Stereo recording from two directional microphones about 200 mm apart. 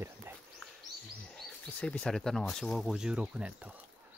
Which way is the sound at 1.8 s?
5° left (ahead or behind).